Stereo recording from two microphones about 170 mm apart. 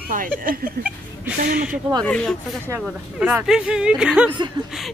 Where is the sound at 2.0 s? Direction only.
5° left (ahead or behind).